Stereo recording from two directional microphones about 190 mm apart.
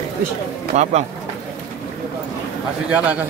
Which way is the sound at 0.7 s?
35° right (ahead or behind).